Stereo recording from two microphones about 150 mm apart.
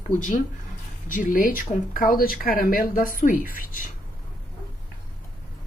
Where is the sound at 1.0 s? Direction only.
65° left (ahead or behind).